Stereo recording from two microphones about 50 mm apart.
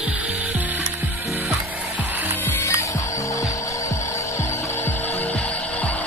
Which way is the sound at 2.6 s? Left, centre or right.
Left.